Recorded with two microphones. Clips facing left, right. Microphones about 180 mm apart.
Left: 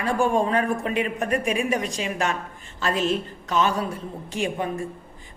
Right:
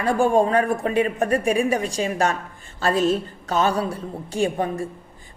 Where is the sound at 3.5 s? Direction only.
35° right (ahead or behind).